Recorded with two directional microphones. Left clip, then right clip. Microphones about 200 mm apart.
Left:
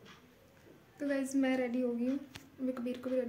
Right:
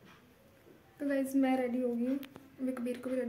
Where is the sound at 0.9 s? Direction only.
5° right (ahead or behind).